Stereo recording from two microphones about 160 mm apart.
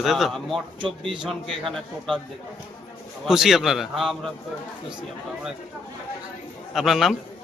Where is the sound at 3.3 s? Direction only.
Centre (ahead or behind).